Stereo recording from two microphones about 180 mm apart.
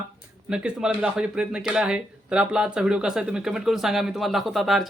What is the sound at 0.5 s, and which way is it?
Speech, 5° right (ahead or behind).